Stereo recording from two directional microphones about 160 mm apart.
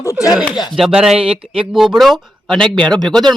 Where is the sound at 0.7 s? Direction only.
Centre (ahead or behind).